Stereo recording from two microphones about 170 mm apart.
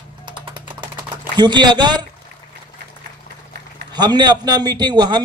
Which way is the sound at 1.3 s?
25° right (ahead or behind).